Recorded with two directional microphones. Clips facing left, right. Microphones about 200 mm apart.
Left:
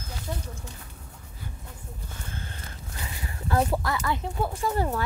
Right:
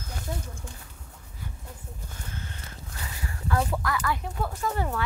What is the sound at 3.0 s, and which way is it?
Speech, 25° left (ahead or behind).